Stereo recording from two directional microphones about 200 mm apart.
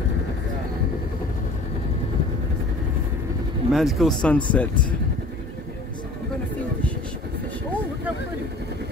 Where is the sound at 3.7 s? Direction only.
Centre (ahead or behind).